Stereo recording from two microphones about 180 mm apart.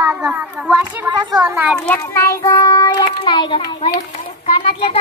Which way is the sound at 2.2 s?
20° left (ahead or behind).